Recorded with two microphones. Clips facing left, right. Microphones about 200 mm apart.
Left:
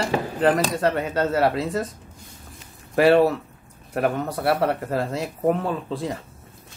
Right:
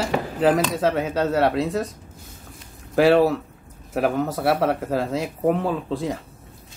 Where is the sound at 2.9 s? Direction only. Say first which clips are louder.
Even; centre (ahead or behind).